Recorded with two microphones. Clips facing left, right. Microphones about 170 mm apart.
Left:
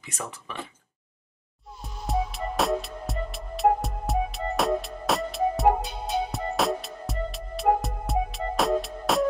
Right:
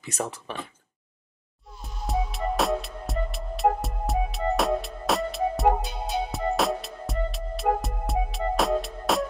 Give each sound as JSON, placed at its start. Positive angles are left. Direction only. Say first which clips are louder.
{"t": 0.0, "sound": "speech", "louder": "right 6 dB", "side_deg": -35}
{"t": 1.8, "sound": "music", "louder": "left 1 dB", "side_deg": 0}